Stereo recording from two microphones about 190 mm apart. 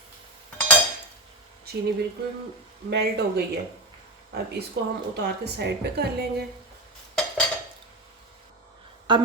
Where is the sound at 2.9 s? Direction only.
55° right (ahead or behind).